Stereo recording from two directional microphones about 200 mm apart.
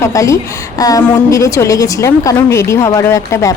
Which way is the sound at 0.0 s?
15° left (ahead or behind).